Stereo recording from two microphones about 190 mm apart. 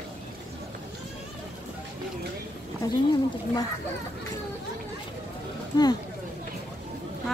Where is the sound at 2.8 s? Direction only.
15° left (ahead or behind).